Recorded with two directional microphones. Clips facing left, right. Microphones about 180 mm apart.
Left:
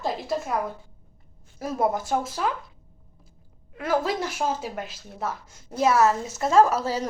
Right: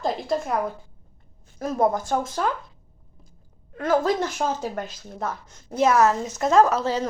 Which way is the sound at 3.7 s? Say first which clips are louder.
Right 4 dB; 10° left (ahead or behind).